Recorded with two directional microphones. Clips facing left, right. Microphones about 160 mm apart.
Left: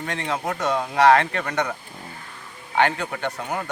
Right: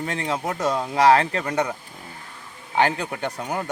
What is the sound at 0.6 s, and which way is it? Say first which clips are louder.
Speech: even; 10° right (ahead or behind).